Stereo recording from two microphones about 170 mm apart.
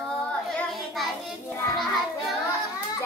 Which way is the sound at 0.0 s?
5° left (ahead or behind).